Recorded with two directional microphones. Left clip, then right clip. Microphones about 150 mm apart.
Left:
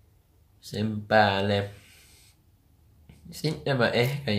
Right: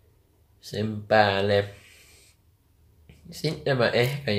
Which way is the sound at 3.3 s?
5° right (ahead or behind).